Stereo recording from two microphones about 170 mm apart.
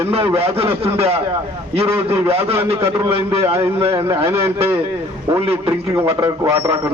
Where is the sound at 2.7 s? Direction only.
15° right (ahead or behind).